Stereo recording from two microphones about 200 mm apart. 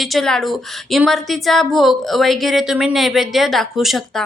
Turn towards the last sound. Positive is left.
turn(degrees=0)  # may be behind; listen again after turning